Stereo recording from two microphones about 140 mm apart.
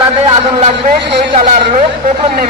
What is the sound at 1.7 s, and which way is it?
Speech, 55° right (ahead or behind).